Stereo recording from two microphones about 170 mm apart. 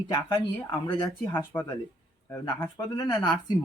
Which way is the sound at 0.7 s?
20° left (ahead or behind).